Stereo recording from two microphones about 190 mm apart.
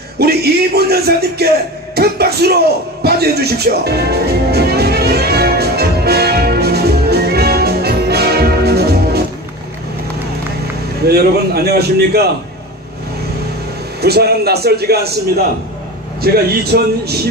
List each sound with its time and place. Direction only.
0.2 s speech: 55° right (ahead or behind)
2.0 s a sound: 55° right (ahead or behind)
11.1 s speech: 55° right (ahead or behind)
14.0 s speech: 55° right (ahead or behind)
16.2 s speech: 55° right (ahead or behind)